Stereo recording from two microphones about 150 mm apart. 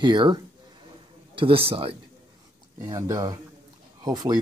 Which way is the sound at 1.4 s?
40° right (ahead or behind).